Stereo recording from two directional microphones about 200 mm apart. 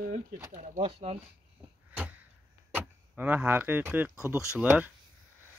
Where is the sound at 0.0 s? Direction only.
45° right (ahead or behind).